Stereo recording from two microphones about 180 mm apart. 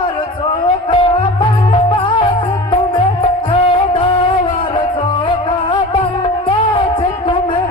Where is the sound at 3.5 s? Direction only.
30° left (ahead or behind).